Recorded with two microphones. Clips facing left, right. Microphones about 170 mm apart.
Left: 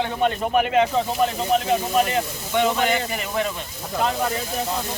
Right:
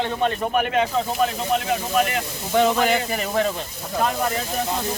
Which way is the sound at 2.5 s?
40° right (ahead or behind).